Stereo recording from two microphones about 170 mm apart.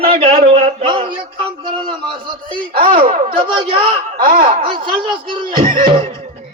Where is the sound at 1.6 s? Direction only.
30° right (ahead or behind).